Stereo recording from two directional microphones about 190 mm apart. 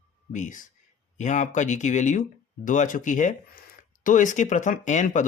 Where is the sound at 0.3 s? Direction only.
40° left (ahead or behind).